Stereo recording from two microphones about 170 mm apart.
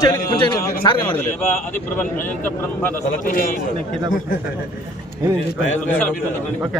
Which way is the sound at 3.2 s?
55° left (ahead or behind).